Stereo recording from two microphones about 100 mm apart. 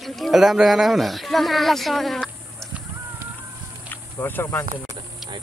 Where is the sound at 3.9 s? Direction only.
20° left (ahead or behind).